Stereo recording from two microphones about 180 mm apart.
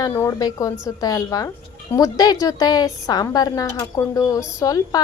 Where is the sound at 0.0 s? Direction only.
15° left (ahead or behind).